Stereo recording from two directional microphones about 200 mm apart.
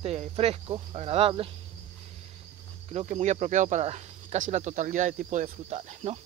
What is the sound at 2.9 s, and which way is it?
Speech, 40° right (ahead or behind).